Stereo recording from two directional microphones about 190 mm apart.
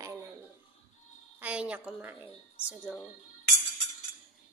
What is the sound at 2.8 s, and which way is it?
Speech, centre (ahead or behind).